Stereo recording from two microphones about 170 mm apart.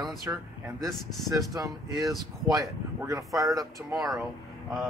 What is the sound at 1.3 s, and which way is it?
Speech, 20° right (ahead or behind).